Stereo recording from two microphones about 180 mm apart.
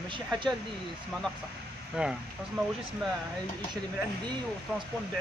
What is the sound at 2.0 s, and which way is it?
Speech, 5° right (ahead or behind).